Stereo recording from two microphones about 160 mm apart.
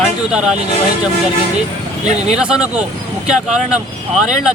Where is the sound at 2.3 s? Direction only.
5° right (ahead or behind).